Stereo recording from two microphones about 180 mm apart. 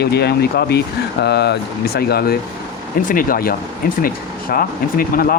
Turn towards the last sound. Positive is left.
turn(degrees=55)  # may be behind; listen again after turning